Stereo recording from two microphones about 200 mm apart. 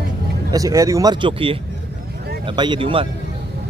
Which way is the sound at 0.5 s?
15° right (ahead or behind).